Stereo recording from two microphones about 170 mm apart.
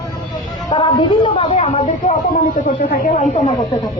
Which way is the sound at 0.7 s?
25° left (ahead or behind).